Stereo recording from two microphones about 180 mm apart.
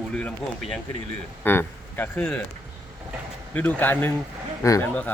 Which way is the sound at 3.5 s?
10° left (ahead or behind).